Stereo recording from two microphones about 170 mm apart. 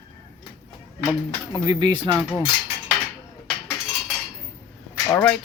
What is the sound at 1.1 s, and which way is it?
Speech, 20° right (ahead or behind).